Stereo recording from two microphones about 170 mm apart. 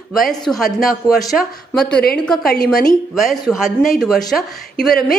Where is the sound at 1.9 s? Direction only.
70° left (ahead or behind).